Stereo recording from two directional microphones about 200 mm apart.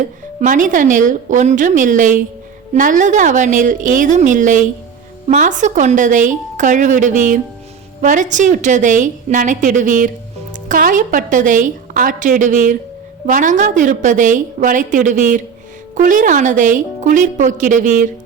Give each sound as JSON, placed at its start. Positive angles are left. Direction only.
{"t": 0.3, "sound": "a woman's voice", "side_deg": -40}